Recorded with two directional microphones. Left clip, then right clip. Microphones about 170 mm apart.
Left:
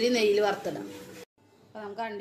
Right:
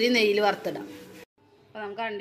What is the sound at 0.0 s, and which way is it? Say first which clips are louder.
Speech: right 2 dB; 15° right (ahead or behind).